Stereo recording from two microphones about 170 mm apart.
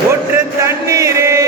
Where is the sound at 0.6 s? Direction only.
20° right (ahead or behind).